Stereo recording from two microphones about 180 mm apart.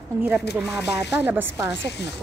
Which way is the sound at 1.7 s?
70° left (ahead or behind).